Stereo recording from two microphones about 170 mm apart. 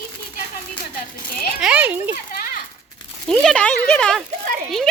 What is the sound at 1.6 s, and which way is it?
Speech, 10° right (ahead or behind).